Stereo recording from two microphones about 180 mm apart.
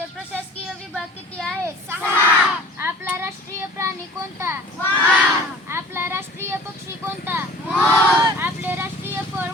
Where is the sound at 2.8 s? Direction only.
10° right (ahead or behind).